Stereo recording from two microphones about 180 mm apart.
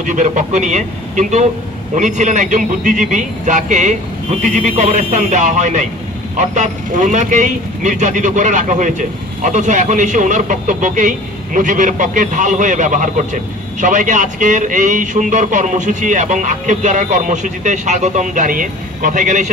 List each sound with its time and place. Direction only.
0.0 s speech: 45° right (ahead or behind)